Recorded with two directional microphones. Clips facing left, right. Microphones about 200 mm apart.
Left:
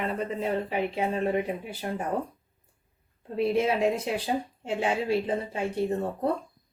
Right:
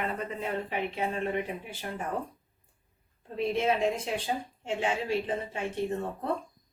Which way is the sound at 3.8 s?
35° left (ahead or behind).